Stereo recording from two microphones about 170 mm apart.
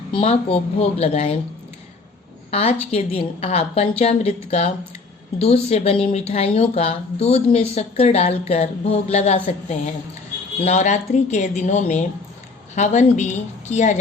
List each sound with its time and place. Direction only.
0.1 s a woman's voice: 35° left (ahead or behind)
2.5 s a woman's voice: 35° left (ahead or behind)